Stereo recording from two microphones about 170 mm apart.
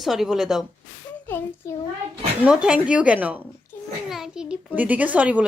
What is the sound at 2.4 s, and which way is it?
Speech, 5° right (ahead or behind).